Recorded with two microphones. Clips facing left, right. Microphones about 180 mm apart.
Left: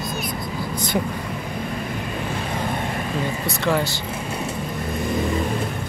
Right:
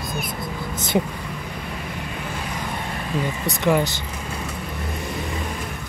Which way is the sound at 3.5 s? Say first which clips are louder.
Right 3 dB; 15° right (ahead or behind).